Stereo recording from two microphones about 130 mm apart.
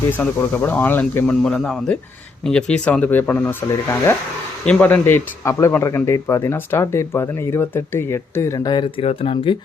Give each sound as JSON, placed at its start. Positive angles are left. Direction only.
{"t": 0.1, "sound": "speech", "side_deg": 15}
{"t": 8.5, "sound": "speech", "side_deg": 35}